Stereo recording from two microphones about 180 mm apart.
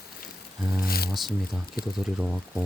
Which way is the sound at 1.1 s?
Centre (ahead or behind).